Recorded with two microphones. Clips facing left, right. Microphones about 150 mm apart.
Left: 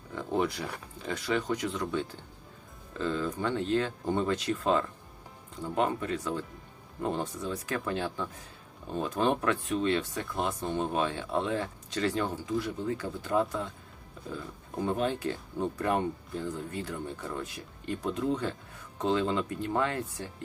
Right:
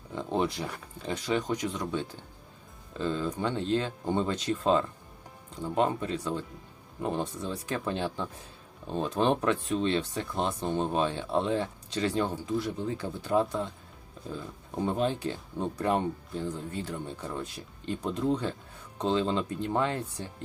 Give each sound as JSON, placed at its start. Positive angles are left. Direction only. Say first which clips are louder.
{"t": 0.2, "sound": "a sound", "louder": "right 1 dB", "side_deg": -20}
{"t": 1.0, "sound": "speech", "louder": "right 1 dB", "side_deg": -20}
{"t": 14.8, "sound": "speech", "louder": "right 1 dB", "side_deg": -20}